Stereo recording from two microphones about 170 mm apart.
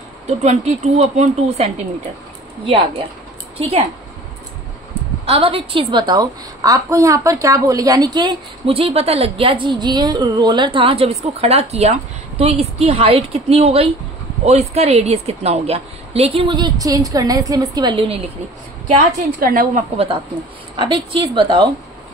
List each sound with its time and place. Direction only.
0.4 s a woman's voice: 40° right (ahead or behind)
5.2 s a woman's voice: 35° right (ahead or behind)
19.1 s a woman's voice: 55° right (ahead or behind)
20.7 s a woman's voice: 30° right (ahead or behind)